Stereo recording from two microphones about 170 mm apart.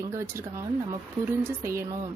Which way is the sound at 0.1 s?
15° right (ahead or behind).